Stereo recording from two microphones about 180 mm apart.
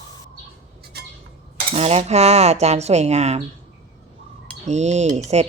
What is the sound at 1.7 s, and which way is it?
A woman's voice, 35° right (ahead or behind).